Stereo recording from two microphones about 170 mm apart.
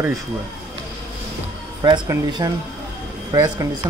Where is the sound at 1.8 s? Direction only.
25° right (ahead or behind).